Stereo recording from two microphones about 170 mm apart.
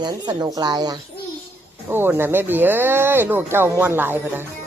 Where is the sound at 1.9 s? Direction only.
15° right (ahead or behind).